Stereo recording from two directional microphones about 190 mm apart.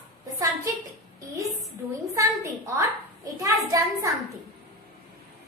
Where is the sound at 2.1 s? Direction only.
15° right (ahead or behind).